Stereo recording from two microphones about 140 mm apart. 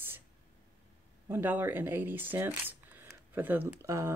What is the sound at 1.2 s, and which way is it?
Speech, 15° right (ahead or behind).